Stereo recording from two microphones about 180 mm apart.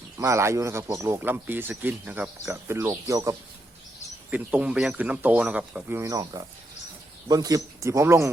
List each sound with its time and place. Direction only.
0.2 s a man's voice: 15° right (ahead or behind)
4.3 s a man's voice: 5° right (ahead or behind)